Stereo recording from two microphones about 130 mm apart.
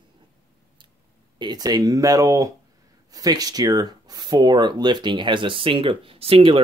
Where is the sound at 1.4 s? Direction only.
30° right (ahead or behind).